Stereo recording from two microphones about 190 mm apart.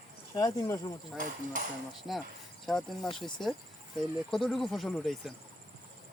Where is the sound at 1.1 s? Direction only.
45° right (ahead or behind).